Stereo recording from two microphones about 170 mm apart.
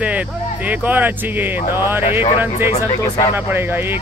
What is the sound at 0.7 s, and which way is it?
Speech, 10° right (ahead or behind).